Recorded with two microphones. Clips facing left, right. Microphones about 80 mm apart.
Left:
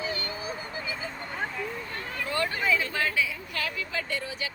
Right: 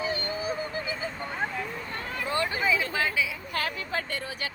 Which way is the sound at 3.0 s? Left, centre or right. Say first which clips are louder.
Even; centre.